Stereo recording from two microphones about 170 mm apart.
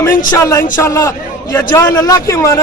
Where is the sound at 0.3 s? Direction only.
15° left (ahead or behind).